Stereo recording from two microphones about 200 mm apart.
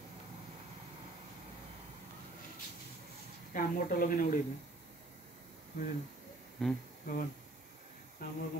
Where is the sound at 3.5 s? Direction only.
45° left (ahead or behind).